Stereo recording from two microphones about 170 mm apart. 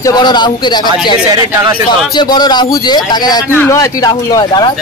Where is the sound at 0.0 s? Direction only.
25° left (ahead or behind).